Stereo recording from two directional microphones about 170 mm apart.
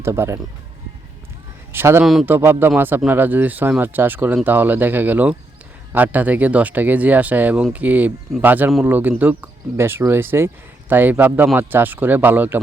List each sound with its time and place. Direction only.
0.0 s speech: 15° right (ahead or behind)
1.7 s speech: 15° right (ahead or behind)